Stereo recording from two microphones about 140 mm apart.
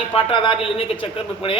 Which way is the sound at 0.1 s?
40° left (ahead or behind).